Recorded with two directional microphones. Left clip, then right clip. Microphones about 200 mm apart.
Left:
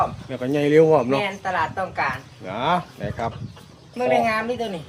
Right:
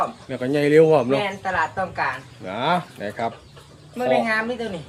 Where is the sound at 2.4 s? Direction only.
5° right (ahead or behind).